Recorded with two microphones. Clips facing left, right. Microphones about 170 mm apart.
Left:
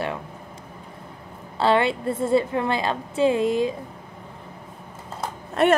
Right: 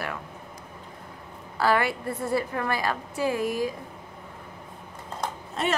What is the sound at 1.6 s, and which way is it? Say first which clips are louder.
A woman's voice: left 4 dB; 25° left (ahead or behind).